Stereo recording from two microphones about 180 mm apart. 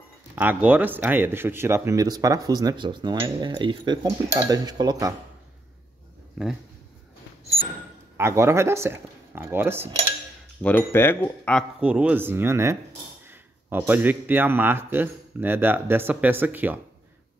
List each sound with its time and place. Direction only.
0.4 s speech: 10° right (ahead or behind)
8.2 s a man's voice: 15° right (ahead or behind)
10.6 s speech: 10° left (ahead or behind)
11.8 s a man's voice: 10° right (ahead or behind)